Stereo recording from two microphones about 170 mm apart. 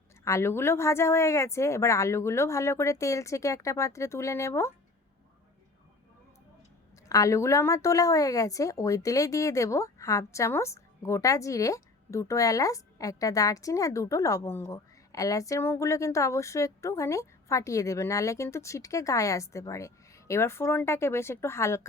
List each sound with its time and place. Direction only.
0.3 s a woman's voice: 15° left (ahead or behind)
7.1 s a woman's voice: 20° left (ahead or behind)